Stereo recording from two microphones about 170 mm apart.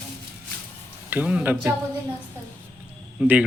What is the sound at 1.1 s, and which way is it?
Speech, 10° right (ahead or behind).